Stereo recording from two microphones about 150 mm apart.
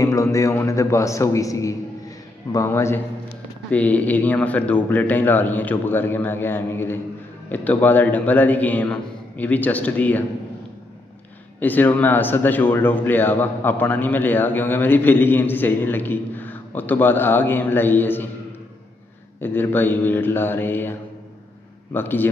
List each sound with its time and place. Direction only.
0.0 s a man's voice: 20° left (ahead or behind)
11.6 s a man's voice: 10° left (ahead or behind)
19.4 s a man's voice: 15° left (ahead or behind)
21.9 s a man's voice: 15° left (ahead or behind)